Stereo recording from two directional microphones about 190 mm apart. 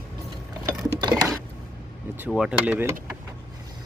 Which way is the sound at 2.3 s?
5° right (ahead or behind).